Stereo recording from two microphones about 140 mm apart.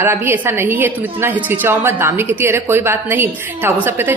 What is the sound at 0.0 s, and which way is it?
A woman's voice, 15° right (ahead or behind).